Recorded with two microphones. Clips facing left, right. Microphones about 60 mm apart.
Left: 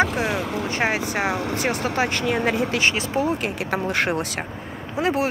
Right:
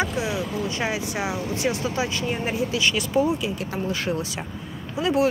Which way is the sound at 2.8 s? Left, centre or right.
Left.